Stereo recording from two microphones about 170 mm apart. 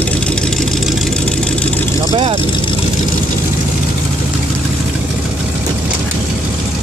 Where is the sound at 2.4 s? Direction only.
30° left (ahead or behind).